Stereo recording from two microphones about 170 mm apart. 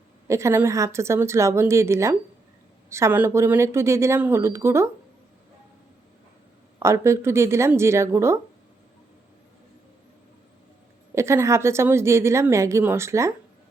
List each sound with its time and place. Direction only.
0.3 s a woman's voice: 15° right (ahead or behind)
6.7 s a woman's voice: 15° right (ahead or behind)
11.1 s a woman's voice: 15° right (ahead or behind)